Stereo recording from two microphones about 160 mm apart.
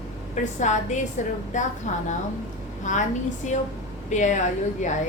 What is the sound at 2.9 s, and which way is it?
A woman's voice, 50° left (ahead or behind).